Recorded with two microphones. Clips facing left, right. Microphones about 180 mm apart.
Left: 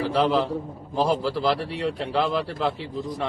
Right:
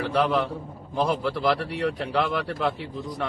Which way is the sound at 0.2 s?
25° left (ahead or behind).